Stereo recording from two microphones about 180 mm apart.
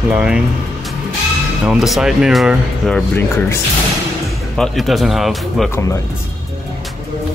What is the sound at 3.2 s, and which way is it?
Speech, 15° left (ahead or behind).